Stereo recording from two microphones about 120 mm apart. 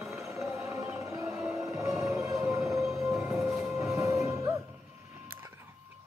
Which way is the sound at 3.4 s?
25° right (ahead or behind).